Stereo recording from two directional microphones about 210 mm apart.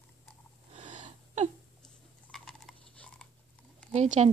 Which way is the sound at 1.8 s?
Centre (ahead or behind).